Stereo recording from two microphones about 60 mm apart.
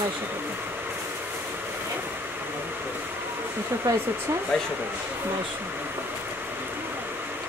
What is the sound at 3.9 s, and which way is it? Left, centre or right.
Speech, right.